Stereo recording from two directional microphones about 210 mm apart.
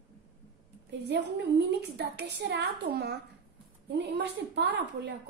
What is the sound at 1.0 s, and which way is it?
A woman's voice, 55° right (ahead or behind).